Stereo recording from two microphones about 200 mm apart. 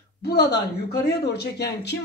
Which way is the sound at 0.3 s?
55° left (ahead or behind).